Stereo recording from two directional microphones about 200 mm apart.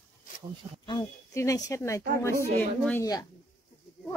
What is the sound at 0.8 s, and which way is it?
Speech, 20° left (ahead or behind).